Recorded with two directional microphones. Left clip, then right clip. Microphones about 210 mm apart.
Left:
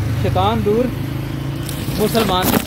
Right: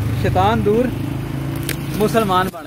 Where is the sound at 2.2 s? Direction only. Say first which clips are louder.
Even; 5° right (ahead or behind).